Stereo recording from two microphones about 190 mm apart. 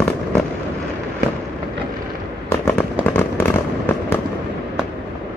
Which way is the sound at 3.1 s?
10° left (ahead or behind).